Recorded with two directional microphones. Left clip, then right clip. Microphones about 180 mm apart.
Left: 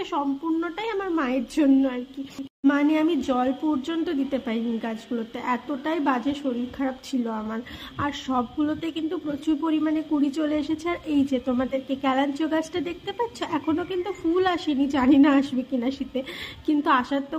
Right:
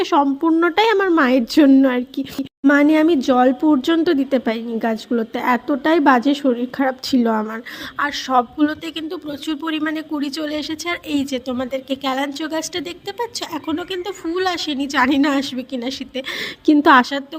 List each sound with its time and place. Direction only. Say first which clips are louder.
0.0 s speech: right 11 dB; 35° right (ahead or behind)